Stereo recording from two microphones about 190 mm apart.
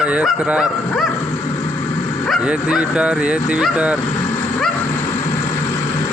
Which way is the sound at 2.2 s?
5° right (ahead or behind).